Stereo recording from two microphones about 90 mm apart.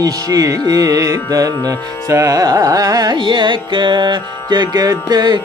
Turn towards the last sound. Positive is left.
turn(degrees=-50)  # may be behind; listen again after turning